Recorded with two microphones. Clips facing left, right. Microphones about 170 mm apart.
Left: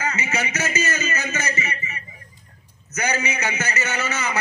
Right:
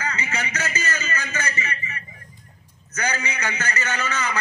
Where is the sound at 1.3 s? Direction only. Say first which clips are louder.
Left 2 dB; 25° left (ahead or behind).